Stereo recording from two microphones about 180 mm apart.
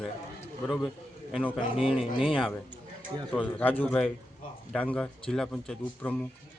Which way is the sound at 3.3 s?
10° left (ahead or behind).